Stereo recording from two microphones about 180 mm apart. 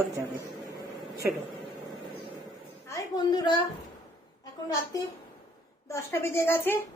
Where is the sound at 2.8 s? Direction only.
20° left (ahead or behind).